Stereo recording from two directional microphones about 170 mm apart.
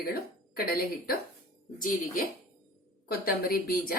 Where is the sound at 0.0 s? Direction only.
60° left (ahead or behind).